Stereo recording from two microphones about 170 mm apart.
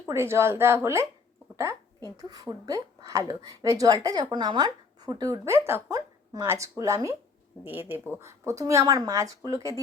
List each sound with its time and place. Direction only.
0.1 s speech: 15° right (ahead or behind)
1.5 s a sound: 15° right (ahead or behind)
2.3 s speech: 20° right (ahead or behind)